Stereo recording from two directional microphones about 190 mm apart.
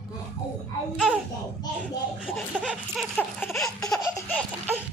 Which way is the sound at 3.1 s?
15° left (ahead or behind).